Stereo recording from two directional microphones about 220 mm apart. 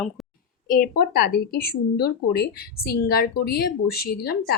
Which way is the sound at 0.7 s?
40° left (ahead or behind).